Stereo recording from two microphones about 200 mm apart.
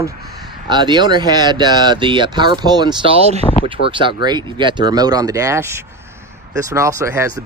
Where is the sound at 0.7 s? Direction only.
20° right (ahead or behind).